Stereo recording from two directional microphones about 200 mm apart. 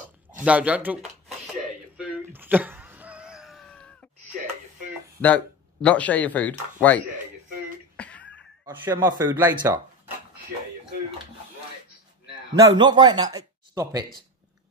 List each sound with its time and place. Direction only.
0.4 s speech: 5° right (ahead or behind)
2.0 s cat: 5° right (ahead or behind)
4.3 s a sound: 40° right (ahead or behind)
5.2 s speech: 5° left (ahead or behind)
7.9 s a sound: 5° left (ahead or behind)
8.6 s speech: 15° right (ahead or behind)
12.5 s a man's voice: 20° right (ahead or behind)